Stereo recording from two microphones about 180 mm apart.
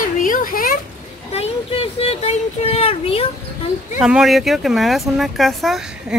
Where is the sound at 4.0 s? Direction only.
5° right (ahead or behind).